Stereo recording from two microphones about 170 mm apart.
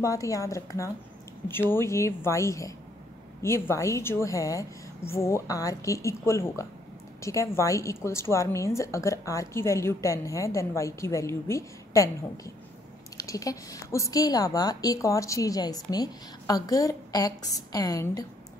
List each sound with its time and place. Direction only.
0.0 s a woman's voice: 20° left (ahead or behind)
13.2 s a woman's voice: 20° left (ahead or behind)